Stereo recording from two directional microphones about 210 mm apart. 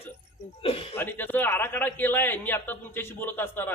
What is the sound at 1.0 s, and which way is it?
A man's voice, 10° left (ahead or behind).